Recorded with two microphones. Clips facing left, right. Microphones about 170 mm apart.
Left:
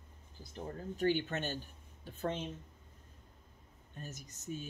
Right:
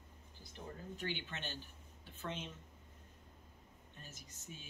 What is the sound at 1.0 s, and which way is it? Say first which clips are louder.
Speech: left 13 dB; 45° left (ahead or behind).